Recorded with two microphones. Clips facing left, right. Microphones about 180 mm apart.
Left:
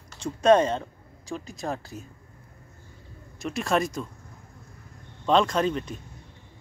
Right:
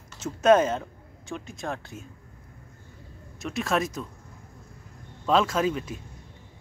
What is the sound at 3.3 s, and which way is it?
Speech, centre (ahead or behind).